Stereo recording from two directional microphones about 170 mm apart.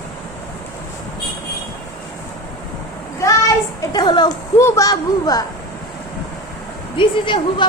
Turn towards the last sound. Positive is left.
turn(degrees=30)  # may be behind; listen again after turning